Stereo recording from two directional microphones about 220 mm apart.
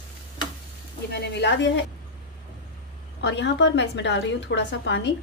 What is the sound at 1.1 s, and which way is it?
Speech, 50° left (ahead or behind).